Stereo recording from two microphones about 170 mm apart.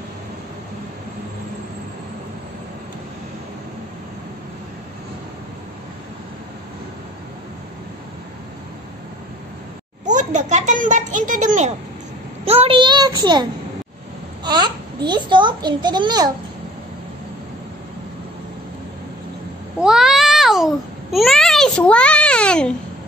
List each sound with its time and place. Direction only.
10.0 s a child's voice: 45° right (ahead or behind)
12.4 s a child's voice: 35° right (ahead or behind)
14.4 s a sound: 25° right (ahead or behind)
15.0 s a child's voice: 25° right (ahead or behind)
19.8 s babbling: 5° right (ahead or behind)